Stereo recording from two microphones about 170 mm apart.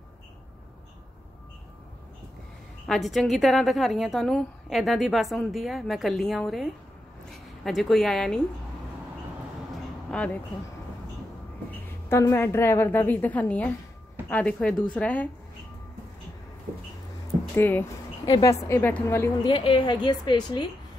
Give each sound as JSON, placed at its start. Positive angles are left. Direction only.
{"t": 2.9, "sound": "a woman's voice", "side_deg": 0}
{"t": 10.1, "sound": "a woman's voice", "side_deg": 10}
{"t": 11.7, "sound": "a woman's voice", "side_deg": 15}
{"t": 17.6, "sound": "a woman's voice", "side_deg": 10}
{"t": 19.4, "sound": "a woman's voice", "side_deg": 30}